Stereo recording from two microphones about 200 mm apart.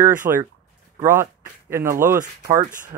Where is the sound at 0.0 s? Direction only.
10° right (ahead or behind).